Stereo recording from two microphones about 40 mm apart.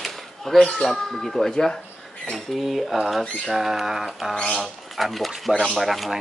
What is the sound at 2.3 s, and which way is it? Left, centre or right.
Speech, centre.